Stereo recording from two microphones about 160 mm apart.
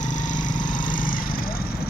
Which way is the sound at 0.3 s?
55° left (ahead or behind).